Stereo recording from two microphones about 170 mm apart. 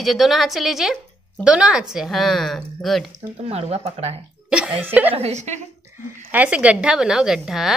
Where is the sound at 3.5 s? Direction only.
35° right (ahead or behind).